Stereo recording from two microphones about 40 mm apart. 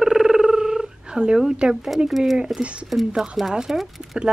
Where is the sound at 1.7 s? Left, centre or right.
Centre.